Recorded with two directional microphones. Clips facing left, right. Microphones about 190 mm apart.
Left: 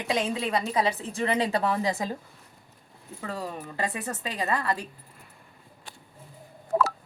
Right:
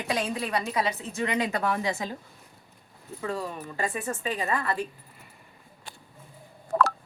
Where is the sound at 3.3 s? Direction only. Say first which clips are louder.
Left 1 dB; 35° left (ahead or behind).